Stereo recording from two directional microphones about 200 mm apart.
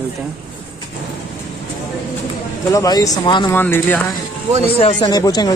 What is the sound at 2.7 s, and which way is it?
Speech, 20° left (ahead or behind).